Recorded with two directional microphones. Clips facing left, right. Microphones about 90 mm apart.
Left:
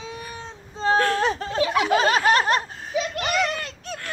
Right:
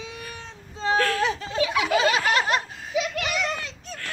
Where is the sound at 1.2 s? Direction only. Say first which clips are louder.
Left 2 dB; 45° left (ahead or behind); by 3.9 s 60° left (ahead or behind).